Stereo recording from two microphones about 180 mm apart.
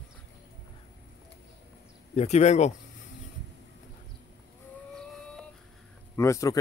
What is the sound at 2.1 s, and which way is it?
Speech, 40° left (ahead or behind).